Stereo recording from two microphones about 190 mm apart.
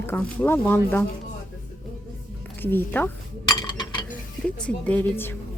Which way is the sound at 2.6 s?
10° left (ahead or behind).